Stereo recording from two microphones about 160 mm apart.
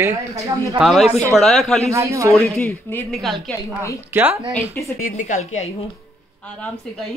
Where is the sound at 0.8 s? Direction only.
Centre (ahead or behind).